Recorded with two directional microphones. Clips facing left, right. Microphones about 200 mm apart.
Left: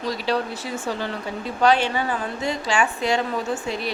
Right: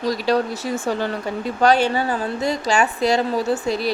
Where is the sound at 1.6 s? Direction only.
40° right (ahead or behind).